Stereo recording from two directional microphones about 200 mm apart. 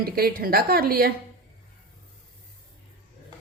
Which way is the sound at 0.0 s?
50° right (ahead or behind).